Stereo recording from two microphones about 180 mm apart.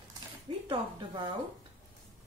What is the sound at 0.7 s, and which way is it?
Speech, 25° right (ahead or behind).